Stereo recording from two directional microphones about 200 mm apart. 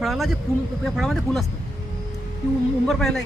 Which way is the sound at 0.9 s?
Centre (ahead or behind).